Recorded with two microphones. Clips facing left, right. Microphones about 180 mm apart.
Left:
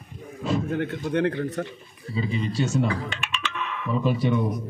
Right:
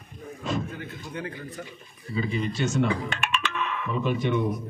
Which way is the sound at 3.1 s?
55° right (ahead or behind).